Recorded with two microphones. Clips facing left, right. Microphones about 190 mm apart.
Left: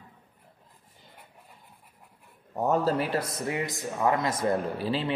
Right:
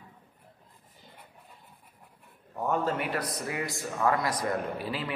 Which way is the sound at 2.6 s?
35° left (ahead or behind).